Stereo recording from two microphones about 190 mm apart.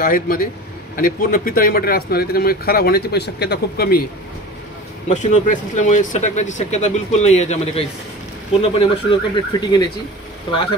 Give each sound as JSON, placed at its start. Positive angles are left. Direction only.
{"t": 0.0, "sound": "speech", "side_deg": 50}
{"t": 5.1, "sound": "speech", "side_deg": 40}